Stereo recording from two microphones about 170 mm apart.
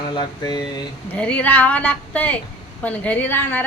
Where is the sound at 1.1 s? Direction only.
10° left (ahead or behind).